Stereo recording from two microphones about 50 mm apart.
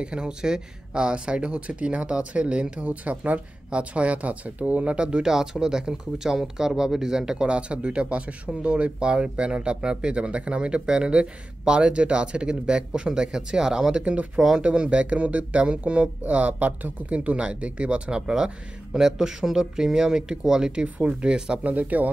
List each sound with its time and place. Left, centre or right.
0.0 s speech: centre
14.0 s speech: right
21.6 s speech: right